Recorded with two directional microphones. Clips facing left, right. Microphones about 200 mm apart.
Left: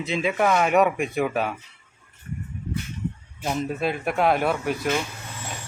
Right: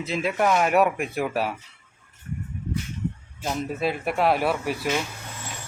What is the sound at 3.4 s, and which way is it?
Speech, centre (ahead or behind).